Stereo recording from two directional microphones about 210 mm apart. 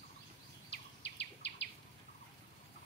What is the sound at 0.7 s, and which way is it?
Bird vocalization, 55° left (ahead or behind).